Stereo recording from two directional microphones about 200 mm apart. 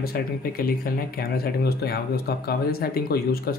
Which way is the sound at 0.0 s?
50° left (ahead or behind).